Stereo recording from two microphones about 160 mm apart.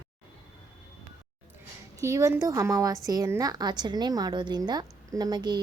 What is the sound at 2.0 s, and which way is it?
A woman's voice, 20° right (ahead or behind).